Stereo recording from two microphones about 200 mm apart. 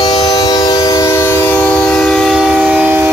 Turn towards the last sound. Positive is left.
turn(degrees=-10)  # may be behind; listen again after turning